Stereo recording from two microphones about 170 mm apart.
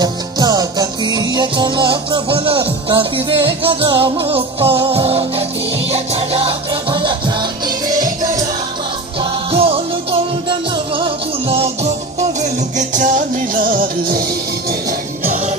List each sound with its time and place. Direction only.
0.0 s music: 25° right (ahead or behind)
9.5 s music: 35° right (ahead or behind); by 15.4 s 55° right (ahead or behind)